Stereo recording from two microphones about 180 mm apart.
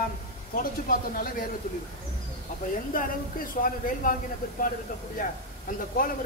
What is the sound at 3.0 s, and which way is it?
Speech, 50° left (ahead or behind).